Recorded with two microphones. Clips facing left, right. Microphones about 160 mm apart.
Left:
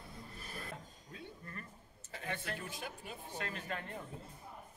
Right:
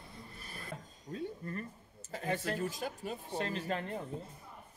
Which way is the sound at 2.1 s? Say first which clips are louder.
Right 7 dB; 40° right (ahead or behind).